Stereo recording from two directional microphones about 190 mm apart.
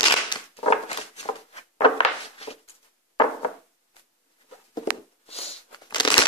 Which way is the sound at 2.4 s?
30° left (ahead or behind).